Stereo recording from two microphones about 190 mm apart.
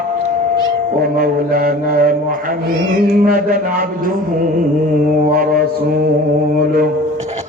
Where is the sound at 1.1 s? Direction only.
50° right (ahead or behind).